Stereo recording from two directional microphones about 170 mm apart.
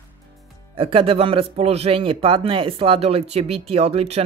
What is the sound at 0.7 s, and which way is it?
Speech, 30° right (ahead or behind).